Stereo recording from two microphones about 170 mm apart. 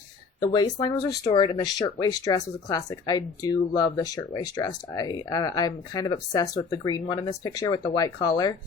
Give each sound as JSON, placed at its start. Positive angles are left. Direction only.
{"t": 0.3, "sound": "speech", "side_deg": 25}